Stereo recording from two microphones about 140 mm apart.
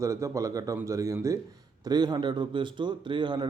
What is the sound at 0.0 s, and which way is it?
A man's voice, 20° right (ahead or behind).